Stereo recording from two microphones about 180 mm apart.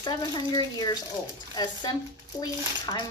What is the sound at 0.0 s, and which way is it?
Speech, 25° left (ahead or behind).